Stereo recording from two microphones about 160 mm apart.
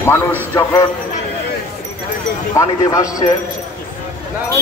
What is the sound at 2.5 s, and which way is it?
Speech, 20° left (ahead or behind).